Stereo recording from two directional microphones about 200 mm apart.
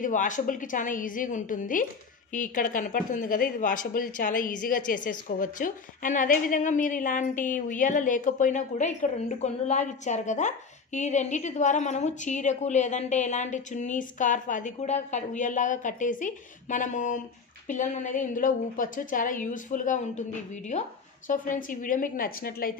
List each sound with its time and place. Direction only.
0.0 s a woman's voice: 40° left (ahead or behind)